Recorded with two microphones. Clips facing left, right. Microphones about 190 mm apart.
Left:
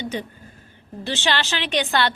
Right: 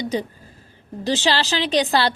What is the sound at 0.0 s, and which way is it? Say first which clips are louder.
A woman's voice: right 4 dB; 35° right (ahead or behind).